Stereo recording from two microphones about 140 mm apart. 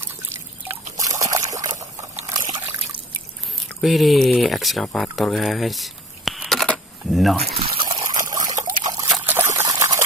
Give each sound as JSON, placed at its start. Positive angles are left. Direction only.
{"t": 0.9, "sound": "trickle", "side_deg": -25}
{"t": 3.8, "sound": "speech", "side_deg": 0}
{"t": 7.4, "sound": "speech", "side_deg": -40}
{"t": 8.1, "sound": "trickle", "side_deg": -25}
{"t": 9.2, "sound": "a sound", "side_deg": -15}